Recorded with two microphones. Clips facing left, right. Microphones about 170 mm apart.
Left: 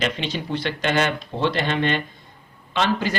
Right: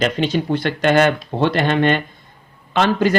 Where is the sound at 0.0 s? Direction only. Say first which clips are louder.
Right 7 dB; 45° right (ahead or behind).